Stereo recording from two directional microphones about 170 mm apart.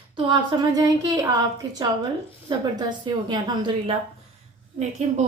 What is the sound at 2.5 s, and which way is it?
A woman's voice, 25° right (ahead or behind).